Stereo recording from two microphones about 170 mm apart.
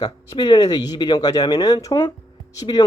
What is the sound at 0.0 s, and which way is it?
Speech, 25° left (ahead or behind).